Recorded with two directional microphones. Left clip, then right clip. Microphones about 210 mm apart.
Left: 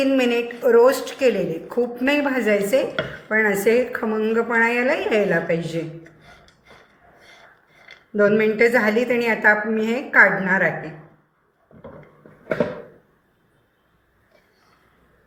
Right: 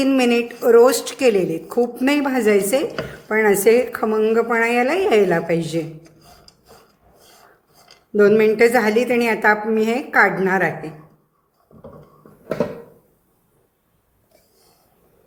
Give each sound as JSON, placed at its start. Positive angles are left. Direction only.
{"t": 0.0, "sound": "a woman's voice", "side_deg": -55}
{"t": 8.1, "sound": "a woman's voice", "side_deg": -55}